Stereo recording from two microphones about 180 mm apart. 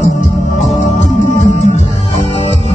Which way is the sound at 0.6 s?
40° left (ahead or behind).